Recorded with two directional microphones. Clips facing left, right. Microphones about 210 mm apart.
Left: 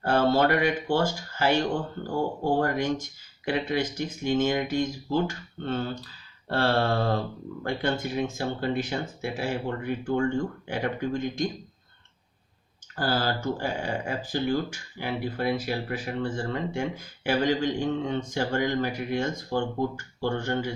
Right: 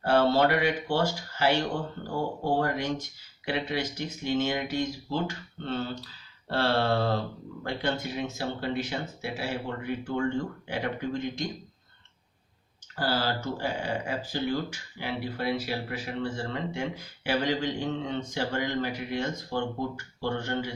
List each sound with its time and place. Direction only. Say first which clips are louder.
0.0 s speech: even; 50° left (ahead or behind)
13.0 s speech: left 2 dB; 45° left (ahead or behind)